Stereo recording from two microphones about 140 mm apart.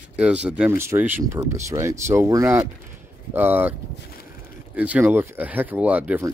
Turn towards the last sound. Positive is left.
turn(degrees=-10)  # may be behind; listen again after turning